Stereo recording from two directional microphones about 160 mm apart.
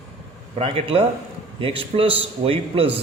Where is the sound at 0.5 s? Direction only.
35° right (ahead or behind).